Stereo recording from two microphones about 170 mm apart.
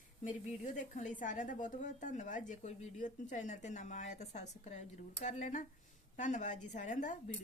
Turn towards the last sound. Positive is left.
turn(degrees=45)  # may be behind; listen again after turning